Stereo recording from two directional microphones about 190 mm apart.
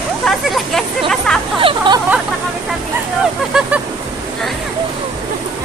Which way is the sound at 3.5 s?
5° right (ahead or behind).